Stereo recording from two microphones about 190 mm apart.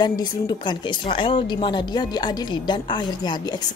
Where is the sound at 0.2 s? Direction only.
25° left (ahead or behind).